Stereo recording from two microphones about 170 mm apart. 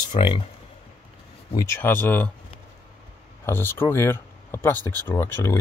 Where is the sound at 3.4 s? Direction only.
15° left (ahead or behind).